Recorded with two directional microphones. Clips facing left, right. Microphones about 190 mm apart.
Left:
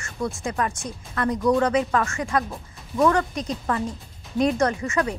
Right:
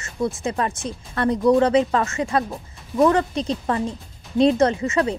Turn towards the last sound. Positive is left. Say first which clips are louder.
# right 3 dB
turn(degrees=-25)  # may be behind; listen again after turning